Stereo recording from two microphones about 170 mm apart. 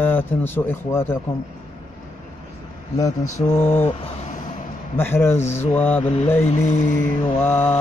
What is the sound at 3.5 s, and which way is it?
Mantra, 15° left (ahead or behind).